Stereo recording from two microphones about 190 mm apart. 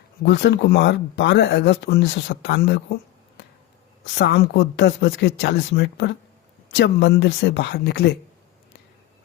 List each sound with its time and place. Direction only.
0.3 s speech: 65° left (ahead or behind)
4.0 s speech: 65° left (ahead or behind)